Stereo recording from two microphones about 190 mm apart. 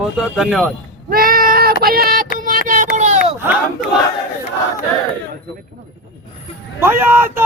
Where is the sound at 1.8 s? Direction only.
50° right (ahead or behind).